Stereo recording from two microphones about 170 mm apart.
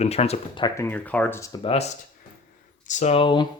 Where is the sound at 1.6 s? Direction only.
35° left (ahead or behind).